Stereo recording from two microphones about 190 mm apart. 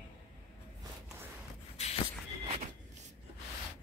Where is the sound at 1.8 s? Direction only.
35° left (ahead or behind).